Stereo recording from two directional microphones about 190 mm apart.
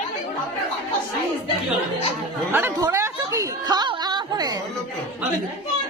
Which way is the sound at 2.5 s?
10° right (ahead or behind).